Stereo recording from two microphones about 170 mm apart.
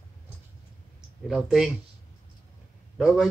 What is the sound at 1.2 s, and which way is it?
Speech, 5° right (ahead or behind).